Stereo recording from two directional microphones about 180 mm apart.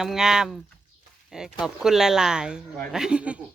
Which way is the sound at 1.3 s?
Centre (ahead or behind).